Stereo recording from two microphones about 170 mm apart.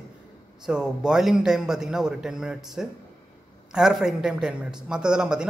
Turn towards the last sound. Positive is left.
turn(degrees=-5)  # may be behind; listen again after turning